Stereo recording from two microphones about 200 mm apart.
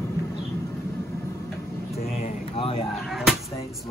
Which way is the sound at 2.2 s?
30° left (ahead or behind).